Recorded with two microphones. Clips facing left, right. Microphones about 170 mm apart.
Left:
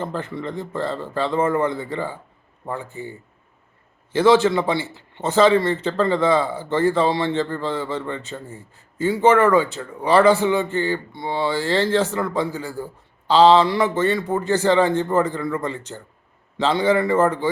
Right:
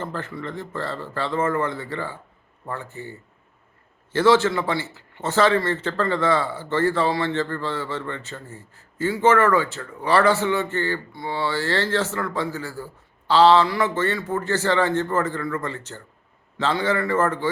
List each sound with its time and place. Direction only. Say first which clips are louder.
0.0 s a man's voice: left 3 dB; 15° left (ahead or behind)